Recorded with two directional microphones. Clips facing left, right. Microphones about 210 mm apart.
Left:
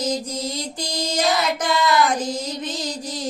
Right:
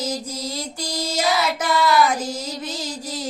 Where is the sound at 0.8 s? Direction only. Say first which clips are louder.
Left 1 dB; 5° right (ahead or behind).